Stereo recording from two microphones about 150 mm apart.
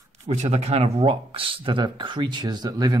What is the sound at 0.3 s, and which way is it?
Speech, 45° right (ahead or behind).